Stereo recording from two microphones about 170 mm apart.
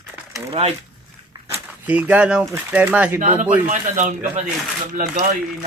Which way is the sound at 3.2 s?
45° right (ahead or behind).